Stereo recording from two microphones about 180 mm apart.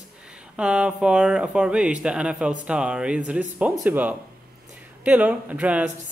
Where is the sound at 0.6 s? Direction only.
5° right (ahead or behind).